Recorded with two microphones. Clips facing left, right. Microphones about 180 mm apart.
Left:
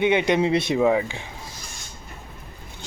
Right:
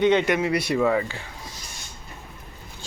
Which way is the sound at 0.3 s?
25° left (ahead or behind).